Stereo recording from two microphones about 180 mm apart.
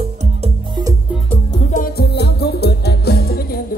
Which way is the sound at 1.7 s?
60° left (ahead or behind).